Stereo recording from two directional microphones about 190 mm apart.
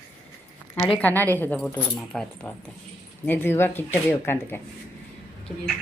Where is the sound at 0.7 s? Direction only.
20° left (ahead or behind).